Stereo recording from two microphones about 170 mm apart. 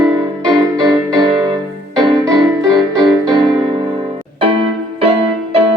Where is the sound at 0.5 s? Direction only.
25° right (ahead or behind).